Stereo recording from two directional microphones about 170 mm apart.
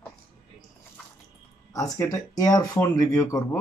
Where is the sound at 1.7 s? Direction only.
15° left (ahead or behind).